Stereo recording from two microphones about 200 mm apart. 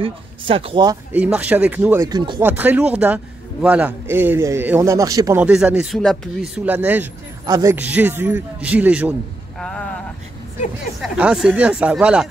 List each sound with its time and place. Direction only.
0.0 s speech: 25° right (ahead or behind)
1.1 s a man's voice: 5° right (ahead or behind)
2.0 s speech: 20° right (ahead or behind)
2.4 s a man's voice: 10° right (ahead or behind)
7.4 s speech: 20° right (ahead or behind)
7.7 s a man's voice: 10° right (ahead or behind)
9.6 s vehicle: 5° left (ahead or behind)
11.0 s speech: 5° right (ahead or behind)